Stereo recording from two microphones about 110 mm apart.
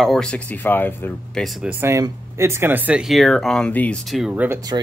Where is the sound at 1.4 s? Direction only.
5° left (ahead or behind).